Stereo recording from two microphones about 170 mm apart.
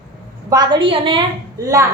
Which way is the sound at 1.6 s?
20° right (ahead or behind).